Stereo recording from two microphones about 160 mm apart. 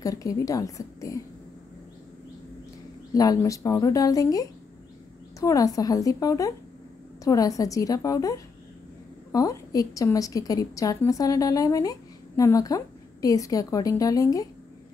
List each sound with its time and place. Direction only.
0.0 s a woman's voice: 20° left (ahead or behind)
3.2 s a woman's voice: 20° left (ahead or behind)